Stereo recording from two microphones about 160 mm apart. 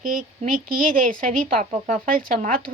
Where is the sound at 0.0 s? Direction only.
55° right (ahead or behind).